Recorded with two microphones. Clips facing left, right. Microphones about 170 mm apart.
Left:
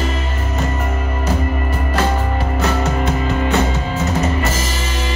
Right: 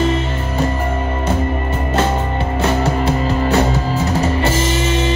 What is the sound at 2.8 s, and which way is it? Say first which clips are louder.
Music: right 2 dB; 35° right (ahead or behind).